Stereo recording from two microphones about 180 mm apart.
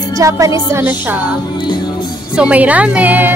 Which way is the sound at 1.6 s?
25° left (ahead or behind).